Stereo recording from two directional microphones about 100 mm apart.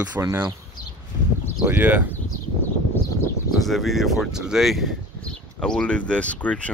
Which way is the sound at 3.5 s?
Centre (ahead or behind).